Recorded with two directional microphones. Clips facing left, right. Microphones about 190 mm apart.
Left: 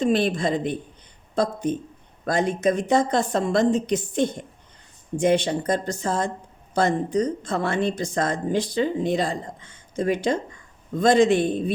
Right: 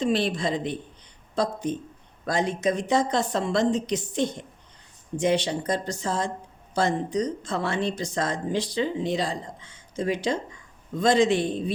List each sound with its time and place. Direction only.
0.0 s speech: 50° left (ahead or behind)